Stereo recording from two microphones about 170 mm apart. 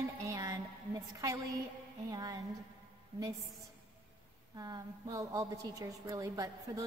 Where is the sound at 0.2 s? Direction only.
20° right (ahead or behind).